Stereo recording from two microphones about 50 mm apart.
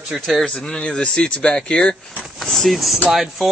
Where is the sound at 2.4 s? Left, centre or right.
Centre.